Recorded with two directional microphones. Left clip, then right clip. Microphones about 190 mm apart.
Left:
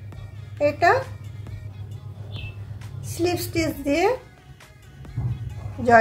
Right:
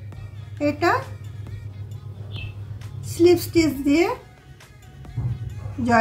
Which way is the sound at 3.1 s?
30° left (ahead or behind).